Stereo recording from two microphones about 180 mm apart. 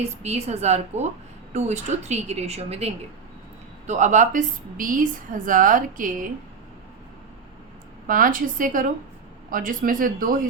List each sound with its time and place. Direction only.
0.2 s a woman's voice: 40° right (ahead or behind)
8.0 s a woman's voice: 50° right (ahead or behind)